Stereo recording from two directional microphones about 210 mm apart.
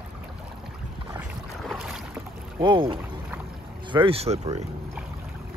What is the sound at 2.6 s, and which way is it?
Speech, 20° right (ahead or behind).